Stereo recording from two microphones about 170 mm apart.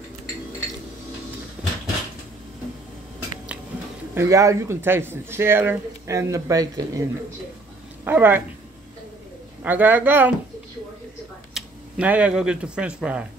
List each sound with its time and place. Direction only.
4.1 s a woman's voice: 15° right (ahead or behind)
9.6 s speech: 10° right (ahead or behind)
11.5 s speech: 5° right (ahead or behind)